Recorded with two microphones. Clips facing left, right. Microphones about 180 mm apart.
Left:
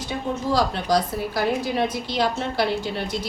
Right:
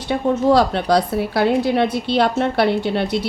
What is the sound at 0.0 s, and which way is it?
A woman's voice, 65° right (ahead or behind).